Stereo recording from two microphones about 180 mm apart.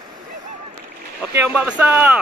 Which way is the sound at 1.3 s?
10° right (ahead or behind).